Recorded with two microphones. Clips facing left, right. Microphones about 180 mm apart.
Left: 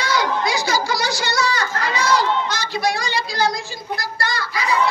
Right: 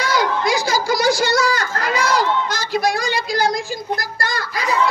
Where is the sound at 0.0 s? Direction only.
45° right (ahead or behind).